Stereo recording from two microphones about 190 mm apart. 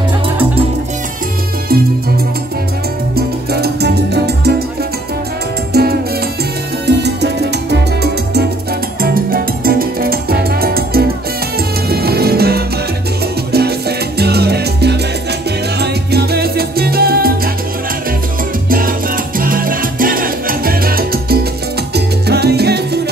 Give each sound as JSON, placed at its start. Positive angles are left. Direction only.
{"t": 3.2, "sound": "music", "side_deg": -55}
{"t": 5.7, "sound": "music", "side_deg": -55}
{"t": 15.8, "sound": "salsa music", "side_deg": -60}
{"t": 18.7, "sound": "salsa music", "side_deg": -50}